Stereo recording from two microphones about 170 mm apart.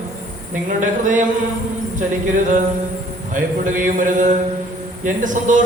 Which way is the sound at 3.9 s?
50° right (ahead or behind).